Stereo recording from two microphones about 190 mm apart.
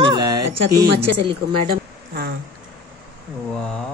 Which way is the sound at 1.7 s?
50° right (ahead or behind).